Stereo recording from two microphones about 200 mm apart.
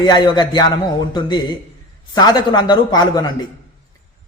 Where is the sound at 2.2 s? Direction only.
20° left (ahead or behind).